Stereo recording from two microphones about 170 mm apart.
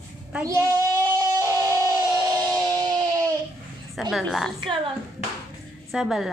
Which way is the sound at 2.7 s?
20° right (ahead or behind).